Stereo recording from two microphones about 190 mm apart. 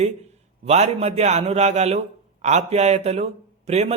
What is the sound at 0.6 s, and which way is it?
A man's voice, 35° right (ahead or behind).